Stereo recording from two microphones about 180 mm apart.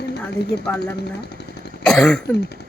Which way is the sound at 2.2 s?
65° left (ahead or behind).